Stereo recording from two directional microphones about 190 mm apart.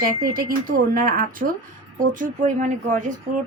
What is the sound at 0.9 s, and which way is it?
A woman's voice, 45° right (ahead or behind).